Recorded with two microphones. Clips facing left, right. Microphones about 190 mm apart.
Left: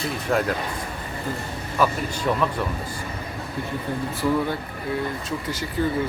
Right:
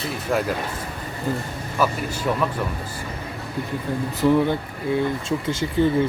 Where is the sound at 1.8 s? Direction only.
10° right (ahead or behind).